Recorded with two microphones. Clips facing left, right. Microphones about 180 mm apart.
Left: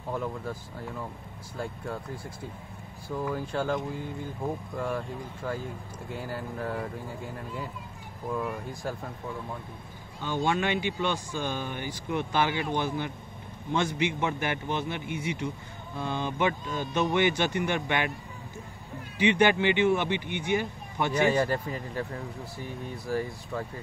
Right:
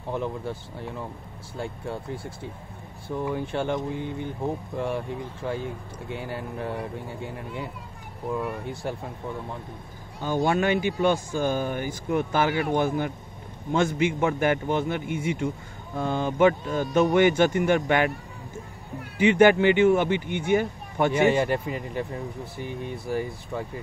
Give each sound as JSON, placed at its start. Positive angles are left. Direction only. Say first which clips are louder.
{"t": 0.1, "sound": "speech", "louder": "right 3 dB", "side_deg": -25}
{"t": 5.6, "sound": "speech", "louder": "right 4 dB", "side_deg": -70}
{"t": 8.3, "sound": "speech", "louder": "right 2 dB", "side_deg": -10}
{"t": 8.8, "sound": "speech", "louder": "right 2 dB", "side_deg": -20}
{"t": 10.2, "sound": "speech", "louder": "right 4 dB", "side_deg": -40}
{"t": 19.1, "sound": "speech", "louder": "right 6 dB", "side_deg": -50}
{"t": 21.1, "sound": "speech", "louder": "right 2 dB", "side_deg": -25}
{"t": 22.6, "sound": "speech", "louder": "right 5 dB", "side_deg": -65}
{"t": 23.5, "sound": "speech", "louder": "right 2 dB", "side_deg": -15}